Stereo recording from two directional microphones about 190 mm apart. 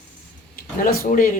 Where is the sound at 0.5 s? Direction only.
45° left (ahead or behind).